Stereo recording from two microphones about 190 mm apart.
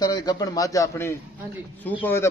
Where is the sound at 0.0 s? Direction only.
20° left (ahead or behind).